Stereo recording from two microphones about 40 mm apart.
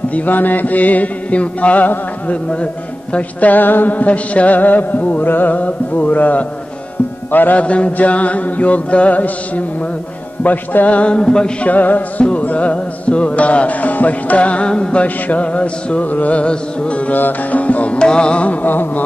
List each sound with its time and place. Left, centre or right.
0.1 s music: left
7.5 s music: left
10.4 s music: left
11.1 s music: left
11.6 s music: left
17.1 s music: left
17.9 s music: left
18.7 s music: left